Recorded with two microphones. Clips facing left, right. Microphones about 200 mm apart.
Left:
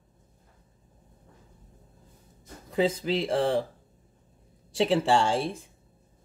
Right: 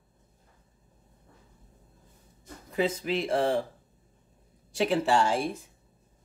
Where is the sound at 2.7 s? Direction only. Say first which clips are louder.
Left 2 dB; 30° left (ahead or behind).